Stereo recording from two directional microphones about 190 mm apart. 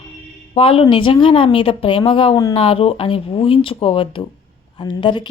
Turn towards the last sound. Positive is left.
turn(degrees=25)  # may be behind; listen again after turning